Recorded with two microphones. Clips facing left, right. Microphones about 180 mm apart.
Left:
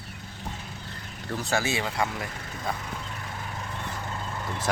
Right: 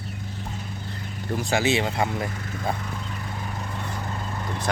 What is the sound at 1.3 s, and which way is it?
Speech, 15° right (ahead or behind).